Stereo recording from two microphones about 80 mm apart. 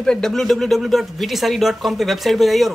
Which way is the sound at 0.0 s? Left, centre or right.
Centre.